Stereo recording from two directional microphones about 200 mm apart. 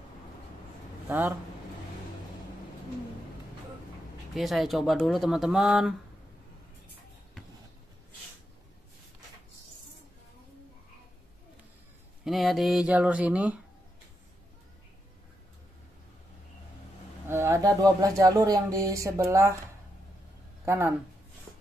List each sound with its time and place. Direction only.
1.0 s speech: 10° right (ahead or behind)
4.4 s speech: centre (ahead or behind)
12.3 s speech: centre (ahead or behind)
17.3 s speech: 15° right (ahead or behind)
20.6 s speech: 10° right (ahead or behind)